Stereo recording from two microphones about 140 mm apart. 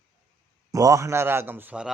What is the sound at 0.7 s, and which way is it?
A man's voice, 25° right (ahead or behind).